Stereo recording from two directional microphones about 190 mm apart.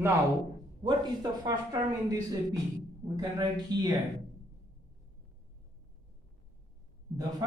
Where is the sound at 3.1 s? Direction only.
20° right (ahead or behind).